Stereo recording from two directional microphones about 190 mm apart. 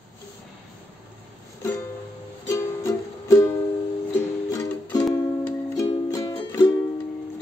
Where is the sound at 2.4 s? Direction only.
15° left (ahead or behind).